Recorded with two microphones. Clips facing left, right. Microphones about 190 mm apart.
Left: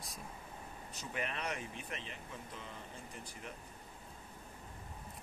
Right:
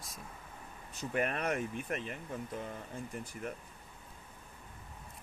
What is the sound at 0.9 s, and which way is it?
Speech, 50° right (ahead or behind).